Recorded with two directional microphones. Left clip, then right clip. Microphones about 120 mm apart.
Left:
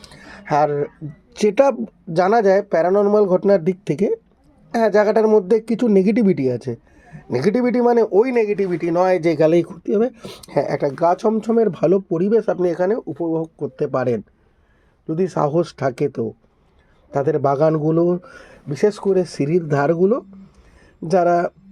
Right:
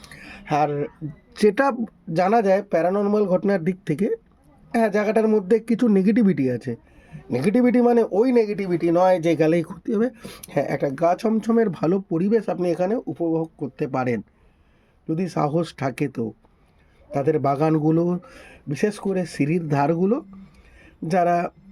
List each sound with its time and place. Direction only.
0.0 s a sound: 30° left (ahead or behind)
2.1 s speech: 35° left (ahead or behind)
3.9 s speech: 15° left (ahead or behind)
4.7 s speech: 35° left (ahead or behind)
9.6 s speech: 15° left (ahead or behind)
10.8 s speech: 5° left (ahead or behind)
11.0 s speech: 40° left (ahead or behind)
13.7 s speech: 15° left (ahead or behind)
15.0 s speech: 30° left (ahead or behind)
17.1 s speech: 35° left (ahead or behind)